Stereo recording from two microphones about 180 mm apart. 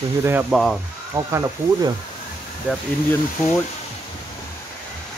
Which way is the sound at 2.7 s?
5° right (ahead or behind).